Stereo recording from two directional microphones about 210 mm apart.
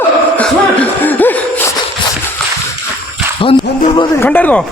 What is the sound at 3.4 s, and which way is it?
Music, 25° left (ahead or behind).